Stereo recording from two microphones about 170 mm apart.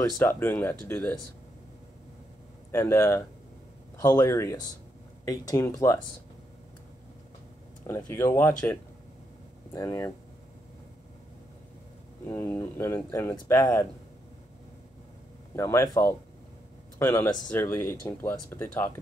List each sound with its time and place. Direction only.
0.0 s speech: 15° left (ahead or behind)
2.7 s speech: 15° left (ahead or behind)
7.8 s speech: 15° left (ahead or behind)
12.3 s speech: 15° left (ahead or behind)
15.5 s speech: 15° left (ahead or behind)